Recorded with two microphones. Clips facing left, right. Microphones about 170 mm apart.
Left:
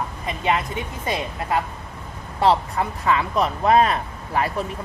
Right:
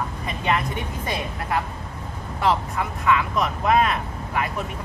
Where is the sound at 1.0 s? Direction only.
20° left (ahead or behind).